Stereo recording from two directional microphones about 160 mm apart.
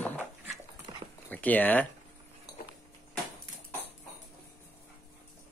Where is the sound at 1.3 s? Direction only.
10° left (ahead or behind).